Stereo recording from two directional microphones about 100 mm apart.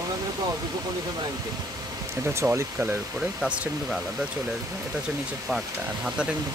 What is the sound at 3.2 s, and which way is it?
Speech, 10° right (ahead or behind).